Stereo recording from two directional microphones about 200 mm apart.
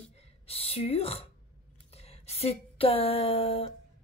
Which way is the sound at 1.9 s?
30° left (ahead or behind).